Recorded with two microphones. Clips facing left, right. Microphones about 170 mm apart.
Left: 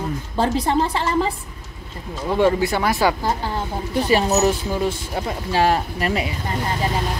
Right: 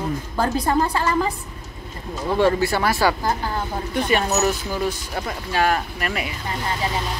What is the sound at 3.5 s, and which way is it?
A woman's voice, 30° left (ahead or behind).